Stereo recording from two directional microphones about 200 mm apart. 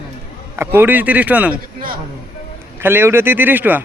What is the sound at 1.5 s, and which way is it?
Speech, 45° right (ahead or behind).